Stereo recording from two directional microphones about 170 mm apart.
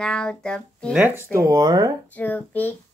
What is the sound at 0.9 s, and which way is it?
Speech, 10° right (ahead or behind).